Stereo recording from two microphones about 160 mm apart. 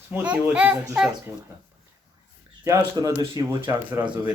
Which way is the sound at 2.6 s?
20° right (ahead or behind).